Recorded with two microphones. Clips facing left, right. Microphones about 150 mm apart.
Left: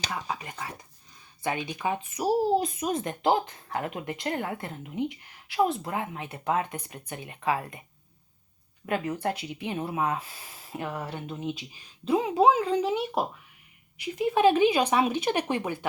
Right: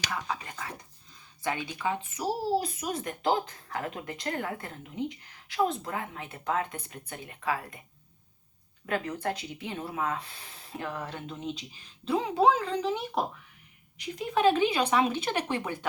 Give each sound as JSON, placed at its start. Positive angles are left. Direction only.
{"t": 0.0, "sound": "a sound", "side_deg": 20}
{"t": 1.5, "sound": "speech", "side_deg": 20}
{"t": 8.9, "sound": "speech", "side_deg": 20}
{"t": 10.2, "sound": "speech", "side_deg": 10}